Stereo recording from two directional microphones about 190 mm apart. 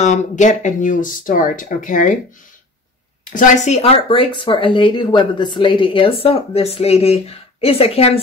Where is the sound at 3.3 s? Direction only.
40° left (ahead or behind).